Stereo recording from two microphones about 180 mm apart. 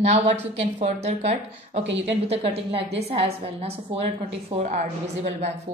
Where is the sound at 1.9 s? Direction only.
80° right.